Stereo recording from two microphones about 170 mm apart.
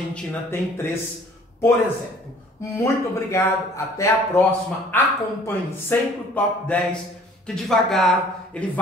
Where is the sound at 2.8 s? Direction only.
15° left (ahead or behind).